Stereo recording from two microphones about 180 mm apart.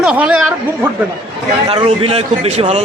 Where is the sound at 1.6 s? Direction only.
30° right (ahead or behind).